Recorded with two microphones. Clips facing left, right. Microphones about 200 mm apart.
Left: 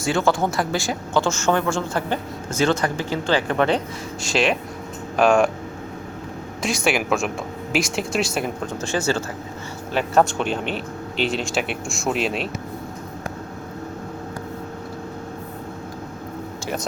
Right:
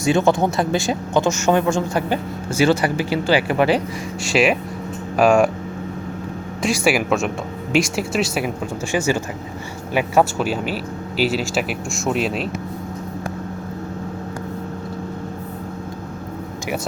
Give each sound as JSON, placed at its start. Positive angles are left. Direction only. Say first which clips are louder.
{"t": 0.0, "sound": "a man's voice", "louder": "right 4 dB", "side_deg": -20}
{"t": 6.7, "sound": "speech", "louder": "right 3 dB", "side_deg": -5}